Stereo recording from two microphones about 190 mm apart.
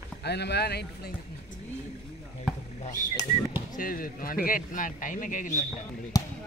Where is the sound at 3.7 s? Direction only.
50° left (ahead or behind).